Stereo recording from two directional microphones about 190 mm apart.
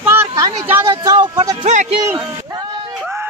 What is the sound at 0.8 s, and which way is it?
Speech, 25° right (ahead or behind).